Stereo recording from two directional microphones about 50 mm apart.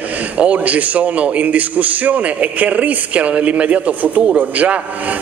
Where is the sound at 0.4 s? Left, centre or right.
Right.